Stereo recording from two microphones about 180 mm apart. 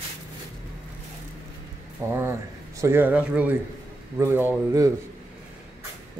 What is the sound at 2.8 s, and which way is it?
Speech, 10° right (ahead or behind).